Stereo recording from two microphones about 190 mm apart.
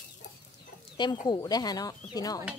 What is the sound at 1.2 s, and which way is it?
Speech, 20° left (ahead or behind).